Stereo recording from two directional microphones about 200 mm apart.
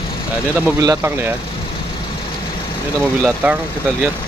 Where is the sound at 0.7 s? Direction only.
15° right (ahead or behind).